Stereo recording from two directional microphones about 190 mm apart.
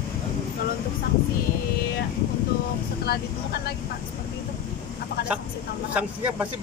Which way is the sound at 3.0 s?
55° left (ahead or behind).